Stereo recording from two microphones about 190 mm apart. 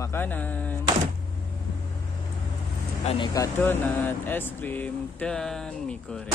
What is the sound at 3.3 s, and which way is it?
Speech, 15° left (ahead or behind).